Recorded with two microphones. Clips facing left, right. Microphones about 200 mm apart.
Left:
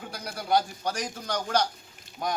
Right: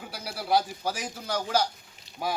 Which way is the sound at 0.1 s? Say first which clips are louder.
Even; 5° right (ahead or behind).